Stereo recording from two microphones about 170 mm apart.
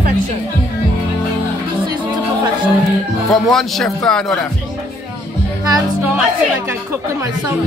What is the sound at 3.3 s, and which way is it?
Speech, centre (ahead or behind).